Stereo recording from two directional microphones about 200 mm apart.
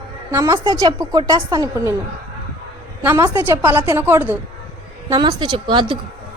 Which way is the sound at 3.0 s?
10° right (ahead or behind).